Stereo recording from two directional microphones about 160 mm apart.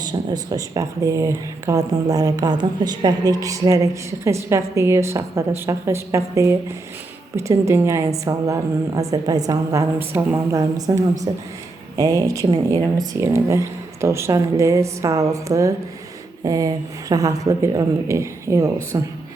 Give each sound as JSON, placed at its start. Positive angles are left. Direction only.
{"t": 0.0, "sound": "a woman's voice", "side_deg": -25}